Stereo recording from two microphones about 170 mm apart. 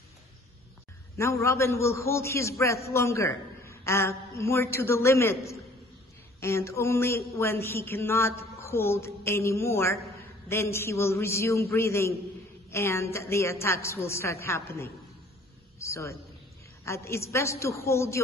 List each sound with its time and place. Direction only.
1.1 s a man's voice: 15° left (ahead or behind)
6.4 s a man's voice: 15° left (ahead or behind)